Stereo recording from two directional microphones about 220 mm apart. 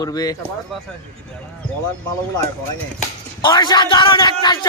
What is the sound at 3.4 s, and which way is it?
A man's voice, 20° left (ahead or behind).